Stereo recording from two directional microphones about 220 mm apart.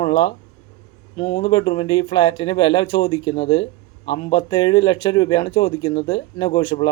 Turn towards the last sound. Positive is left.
turn(degrees=20)  # may be behind; listen again after turning